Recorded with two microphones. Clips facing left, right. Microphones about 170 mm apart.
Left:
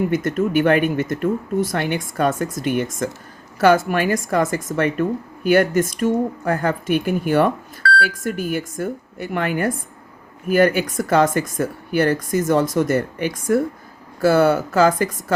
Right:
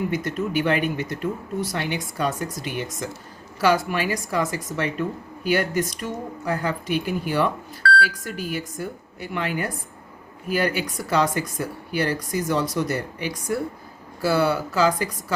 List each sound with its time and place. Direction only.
0.1 s speech: 50° left (ahead or behind)